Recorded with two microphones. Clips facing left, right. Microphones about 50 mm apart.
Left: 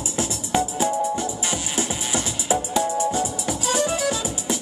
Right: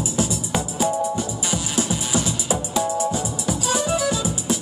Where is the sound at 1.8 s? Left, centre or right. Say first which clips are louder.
Right 4 dB; left.